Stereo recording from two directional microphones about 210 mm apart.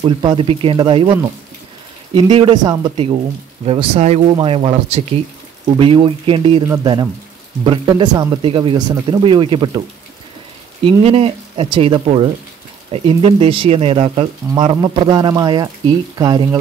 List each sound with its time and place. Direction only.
0.0 s speech: 25° right (ahead or behind)
2.1 s speech: 25° right (ahead or behind)
10.9 s speech: 25° right (ahead or behind)